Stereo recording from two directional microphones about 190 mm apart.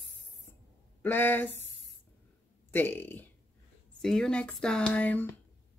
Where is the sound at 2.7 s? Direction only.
10° left (ahead or behind).